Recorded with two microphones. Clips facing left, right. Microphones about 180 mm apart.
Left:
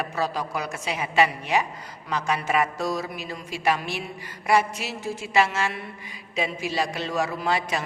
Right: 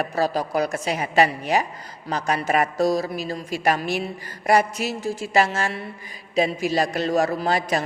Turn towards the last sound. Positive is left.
turn(degrees=-40)  # may be behind; listen again after turning